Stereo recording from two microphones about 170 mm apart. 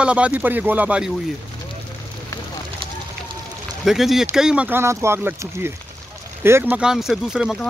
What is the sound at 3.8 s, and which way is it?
Speech, centre (ahead or behind).